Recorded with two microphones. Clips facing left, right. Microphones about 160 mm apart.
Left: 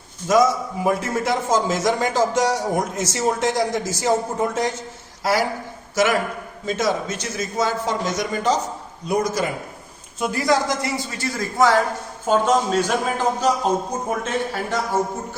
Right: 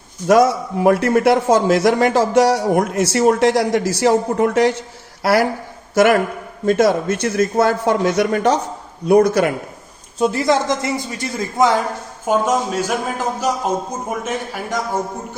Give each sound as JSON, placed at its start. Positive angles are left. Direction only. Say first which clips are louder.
{"t": 0.3, "sound": "a man's voice", "louder": "right 4 dB", "side_deg": -65}
{"t": 10.2, "sound": "a man's voice", "louder": "right 4 dB", "side_deg": -35}